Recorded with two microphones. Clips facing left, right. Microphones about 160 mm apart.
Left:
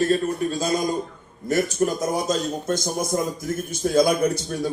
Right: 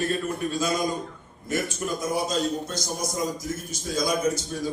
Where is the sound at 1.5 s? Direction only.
45° left (ahead or behind); by 4.7 s 65° left (ahead or behind).